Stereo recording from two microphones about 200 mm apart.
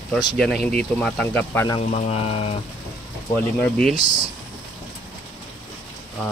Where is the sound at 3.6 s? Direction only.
5° left (ahead or behind).